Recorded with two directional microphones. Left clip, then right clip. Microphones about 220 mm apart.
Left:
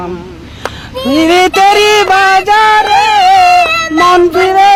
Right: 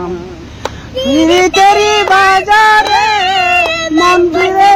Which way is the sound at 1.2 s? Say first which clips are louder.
Left 1 dB; 55° left (ahead or behind).